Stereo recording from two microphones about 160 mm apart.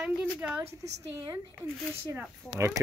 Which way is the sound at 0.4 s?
10° right (ahead or behind).